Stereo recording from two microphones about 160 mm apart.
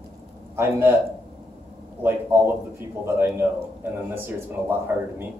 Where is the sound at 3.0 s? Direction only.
15° right (ahead or behind).